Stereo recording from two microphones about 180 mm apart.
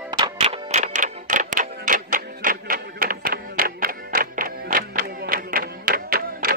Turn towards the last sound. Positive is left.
turn(degrees=-55)  # may be behind; listen again after turning